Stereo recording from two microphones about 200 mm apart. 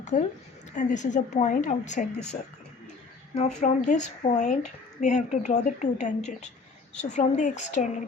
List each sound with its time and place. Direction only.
0.0 s a woman's voice: 35° left (ahead or behind)
3.3 s speech: 35° left (ahead or behind)